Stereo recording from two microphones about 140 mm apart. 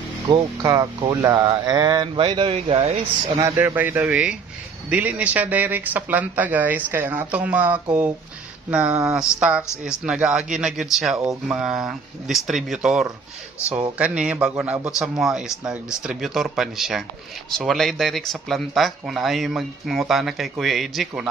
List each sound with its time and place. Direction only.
0.3 s speech: 30° right (ahead or behind); by 3.3 s 45° right (ahead or behind)
3.3 s speech: 20° right (ahead or behind); by 21.3 s centre (ahead or behind)